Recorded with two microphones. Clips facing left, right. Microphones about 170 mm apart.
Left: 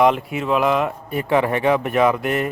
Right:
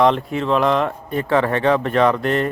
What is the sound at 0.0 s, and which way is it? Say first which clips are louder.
A man's voice: right 1 dB; 10° left (ahead or behind).